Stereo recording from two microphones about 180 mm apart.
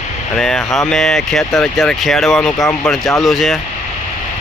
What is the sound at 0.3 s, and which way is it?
Speech, centre (ahead or behind).